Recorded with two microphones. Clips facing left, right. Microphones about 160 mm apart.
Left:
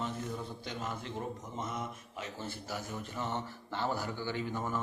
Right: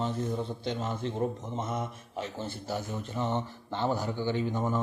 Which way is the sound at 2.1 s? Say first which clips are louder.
Right 7 dB; 30° right (ahead or behind).